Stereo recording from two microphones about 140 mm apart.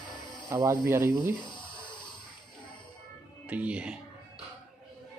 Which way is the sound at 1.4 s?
35° left (ahead or behind).